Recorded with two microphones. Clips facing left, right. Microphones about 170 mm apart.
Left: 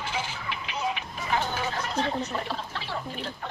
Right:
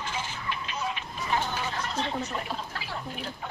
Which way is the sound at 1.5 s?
50° left (ahead or behind).